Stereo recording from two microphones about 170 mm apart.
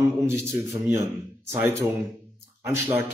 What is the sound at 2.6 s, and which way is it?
Speech, 15° right (ahead or behind).